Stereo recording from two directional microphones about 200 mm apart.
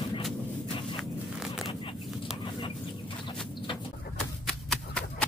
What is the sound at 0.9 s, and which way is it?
Walk, centre (ahead or behind).